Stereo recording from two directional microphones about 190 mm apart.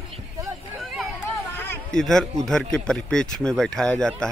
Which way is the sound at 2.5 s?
5° left (ahead or behind).